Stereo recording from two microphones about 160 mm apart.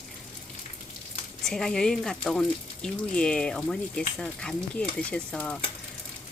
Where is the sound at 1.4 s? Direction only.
5° left (ahead or behind).